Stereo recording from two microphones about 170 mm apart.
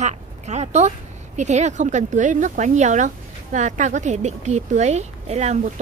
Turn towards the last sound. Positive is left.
turn(degrees=-40)  # may be behind; listen again after turning